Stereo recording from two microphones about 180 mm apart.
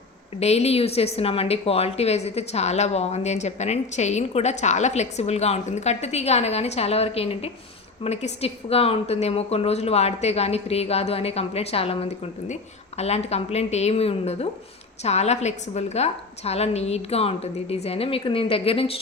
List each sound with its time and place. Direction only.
0.3 s a woman's voice: 35° left (ahead or behind)